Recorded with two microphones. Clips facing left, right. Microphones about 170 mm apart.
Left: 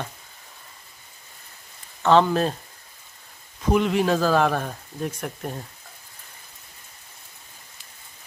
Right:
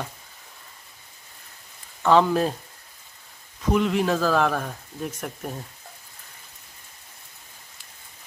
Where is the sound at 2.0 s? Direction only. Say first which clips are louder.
Left 1 dB; 10° right (ahead or behind).